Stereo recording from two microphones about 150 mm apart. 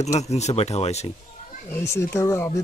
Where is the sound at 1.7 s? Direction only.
15° left (ahead or behind).